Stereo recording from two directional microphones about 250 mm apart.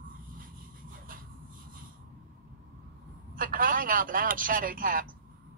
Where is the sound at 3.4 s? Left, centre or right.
Right.